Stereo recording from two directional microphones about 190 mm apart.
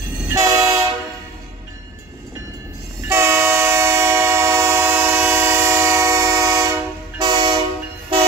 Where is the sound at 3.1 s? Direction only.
15° right (ahead or behind).